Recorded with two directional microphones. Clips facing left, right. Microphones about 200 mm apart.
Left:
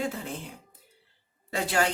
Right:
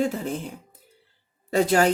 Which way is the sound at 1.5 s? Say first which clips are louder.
Right 8 dB; 40° right (ahead or behind).